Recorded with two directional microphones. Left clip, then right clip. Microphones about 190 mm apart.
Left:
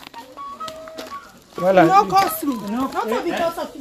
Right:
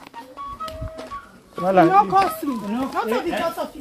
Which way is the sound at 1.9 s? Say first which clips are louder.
Left 1 dB; 55° left (ahead or behind).